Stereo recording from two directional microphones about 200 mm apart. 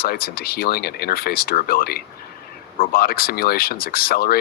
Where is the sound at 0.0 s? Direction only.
50° left (ahead or behind).